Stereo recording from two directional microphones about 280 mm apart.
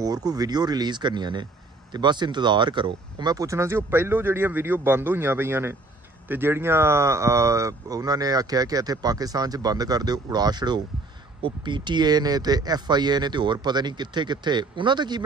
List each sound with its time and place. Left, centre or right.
0.0 s speech: centre